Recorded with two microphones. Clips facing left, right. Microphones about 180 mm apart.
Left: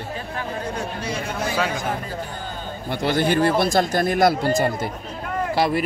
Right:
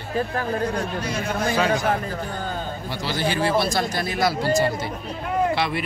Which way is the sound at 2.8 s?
55° left (ahead or behind).